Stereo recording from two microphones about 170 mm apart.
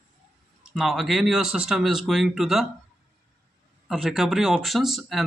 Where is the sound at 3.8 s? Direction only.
Centre (ahead or behind).